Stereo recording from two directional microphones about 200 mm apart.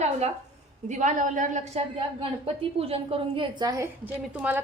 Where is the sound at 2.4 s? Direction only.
30° right (ahead or behind).